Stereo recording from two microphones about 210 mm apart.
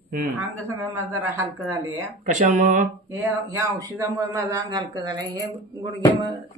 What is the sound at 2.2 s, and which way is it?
Speech, 35° right (ahead or behind).